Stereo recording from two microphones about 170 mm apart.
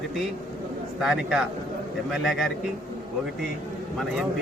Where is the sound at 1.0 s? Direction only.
Centre (ahead or behind).